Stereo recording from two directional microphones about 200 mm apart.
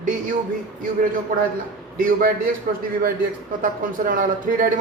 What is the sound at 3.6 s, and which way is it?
Speech, 40° right (ahead or behind).